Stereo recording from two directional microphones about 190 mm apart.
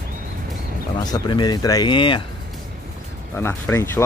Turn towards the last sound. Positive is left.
turn(degrees=15)  # may be behind; listen again after turning